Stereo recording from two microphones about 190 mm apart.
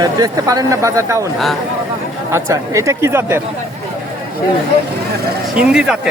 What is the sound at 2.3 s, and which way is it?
Speech, 15° right (ahead or behind).